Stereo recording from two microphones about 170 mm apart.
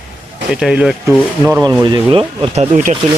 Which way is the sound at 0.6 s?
5° right (ahead or behind).